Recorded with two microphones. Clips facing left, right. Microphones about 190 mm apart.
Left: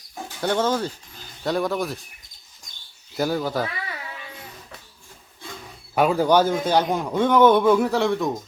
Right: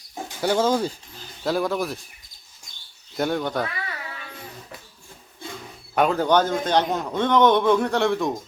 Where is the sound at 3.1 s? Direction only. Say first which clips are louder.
Left 1 dB; centre (ahead or behind).